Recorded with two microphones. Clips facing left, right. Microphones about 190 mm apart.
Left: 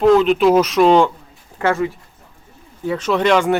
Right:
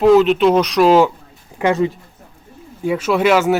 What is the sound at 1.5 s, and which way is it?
Speech, 15° right (ahead or behind).